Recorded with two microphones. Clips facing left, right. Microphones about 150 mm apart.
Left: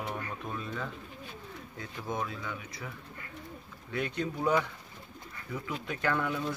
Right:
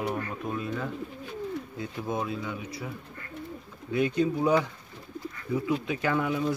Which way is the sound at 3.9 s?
10° right (ahead or behind).